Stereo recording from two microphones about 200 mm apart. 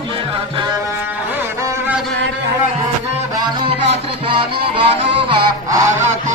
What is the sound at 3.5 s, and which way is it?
Music, 30° right (ahead or behind).